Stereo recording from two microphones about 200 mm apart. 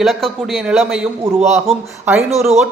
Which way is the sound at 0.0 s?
Centre (ahead or behind).